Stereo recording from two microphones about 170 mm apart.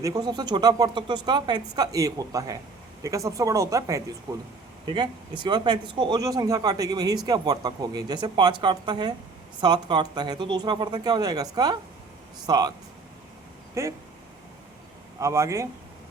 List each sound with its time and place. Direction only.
0.0 s speech: 20° right (ahead or behind)
13.8 s speech: 20° right (ahead or behind)
15.2 s speech: 15° right (ahead or behind)